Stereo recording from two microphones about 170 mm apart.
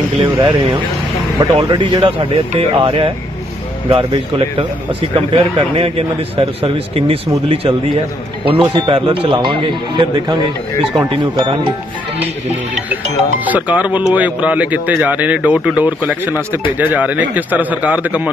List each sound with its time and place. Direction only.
0.4 s a man's voice: 25° right (ahead or behind)
13.5 s speech: 10° right (ahead or behind)